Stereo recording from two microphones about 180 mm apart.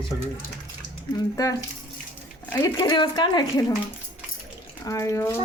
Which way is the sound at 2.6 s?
25° left (ahead or behind).